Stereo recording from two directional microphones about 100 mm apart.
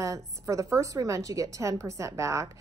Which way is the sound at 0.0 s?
35° right (ahead or behind).